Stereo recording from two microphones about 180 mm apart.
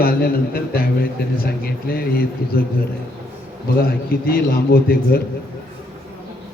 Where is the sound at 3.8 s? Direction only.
60° left (ahead or behind).